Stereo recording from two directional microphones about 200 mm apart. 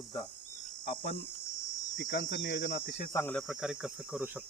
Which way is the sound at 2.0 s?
65° left (ahead or behind).